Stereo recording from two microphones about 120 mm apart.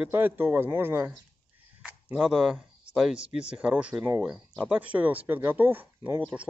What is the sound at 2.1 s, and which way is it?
Speech, 5° right (ahead or behind).